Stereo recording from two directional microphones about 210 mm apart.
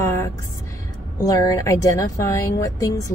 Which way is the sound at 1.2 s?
15° left (ahead or behind).